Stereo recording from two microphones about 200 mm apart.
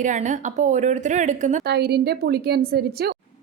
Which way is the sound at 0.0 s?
40° right (ahead or behind).